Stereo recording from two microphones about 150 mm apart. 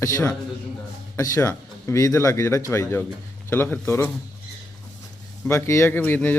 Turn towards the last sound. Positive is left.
turn(degrees=10)  # may be behind; listen again after turning